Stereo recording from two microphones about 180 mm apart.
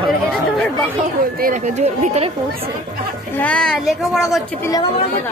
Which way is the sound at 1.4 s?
40° right (ahead or behind).